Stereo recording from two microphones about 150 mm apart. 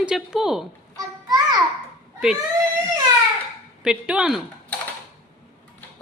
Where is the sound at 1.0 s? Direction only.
25° right (ahead or behind).